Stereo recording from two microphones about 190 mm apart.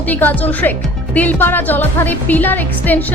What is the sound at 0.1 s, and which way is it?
Speech, 10° left (ahead or behind).